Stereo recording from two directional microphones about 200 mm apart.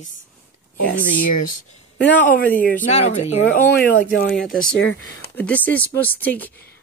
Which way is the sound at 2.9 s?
35° left (ahead or behind).